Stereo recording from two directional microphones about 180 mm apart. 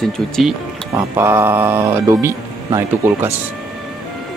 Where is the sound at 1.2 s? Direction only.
15° right (ahead or behind).